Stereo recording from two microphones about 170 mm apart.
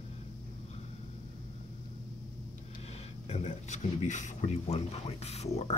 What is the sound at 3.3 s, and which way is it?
Speech, 40° left (ahead or behind).